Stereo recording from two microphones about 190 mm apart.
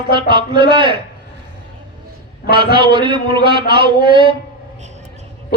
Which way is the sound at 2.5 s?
25° right (ahead or behind).